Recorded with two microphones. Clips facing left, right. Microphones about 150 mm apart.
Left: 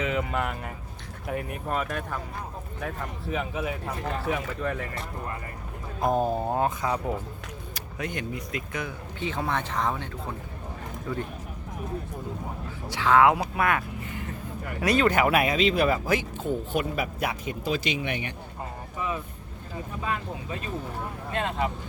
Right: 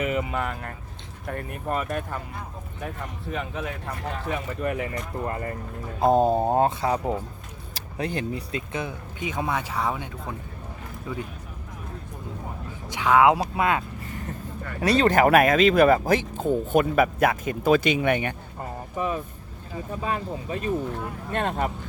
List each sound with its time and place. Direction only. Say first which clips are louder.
0.0 s speech: right 1 dB; 5° right (ahead or behind)
4.6 s speech: right 7 dB; 10° right (ahead or behind)
6.0 s speech: right 5 dB; 35° right (ahead or behind)
9.2 s speech: right 1 dB; 15° right (ahead or behind)
12.9 s speech: right 1 dB; 15° right (ahead or behind)
14.8 s speech: right 3 dB; 35° right (ahead or behind); by 18.3 s 55° right (ahead or behind)
20.1 s speech: right 3 dB; 35° right (ahead or behind)
21.3 s speech: right 2 dB; 50° right (ahead or behind)